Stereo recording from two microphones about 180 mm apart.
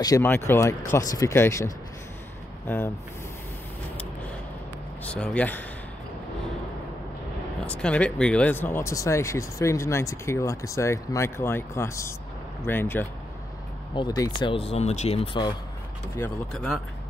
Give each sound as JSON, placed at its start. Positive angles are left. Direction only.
{"t": 0.0, "sound": "speech", "side_deg": 15}
{"t": 5.0, "sound": "speech", "side_deg": 5}
{"t": 7.6, "sound": "speech", "side_deg": 5}
{"t": 16.5, "sound": "speech", "side_deg": 5}